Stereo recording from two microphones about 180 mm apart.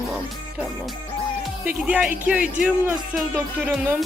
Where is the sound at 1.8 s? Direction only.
10° right (ahead or behind).